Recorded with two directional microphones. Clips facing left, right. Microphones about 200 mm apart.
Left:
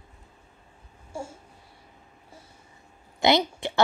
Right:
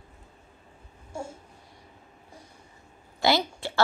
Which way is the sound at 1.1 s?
10° left (ahead or behind).